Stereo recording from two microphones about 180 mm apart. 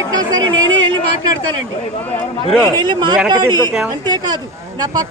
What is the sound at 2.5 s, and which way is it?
Speech, 5° left (ahead or behind).